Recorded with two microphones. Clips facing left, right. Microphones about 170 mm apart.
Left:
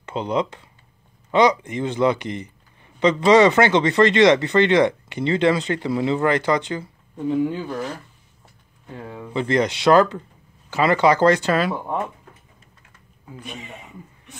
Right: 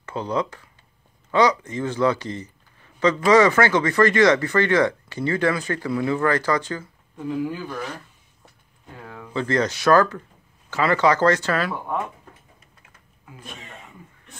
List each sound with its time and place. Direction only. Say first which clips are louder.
0.0 s speech: left 2 dB; 20° left (ahead or behind)
9.0 s speech: left 2 dB; 20° left (ahead or behind)